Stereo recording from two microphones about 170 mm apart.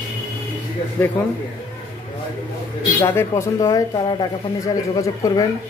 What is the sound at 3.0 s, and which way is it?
Speech, 15° left (ahead or behind).